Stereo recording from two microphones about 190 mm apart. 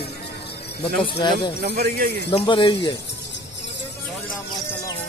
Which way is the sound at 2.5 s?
25° left (ahead or behind).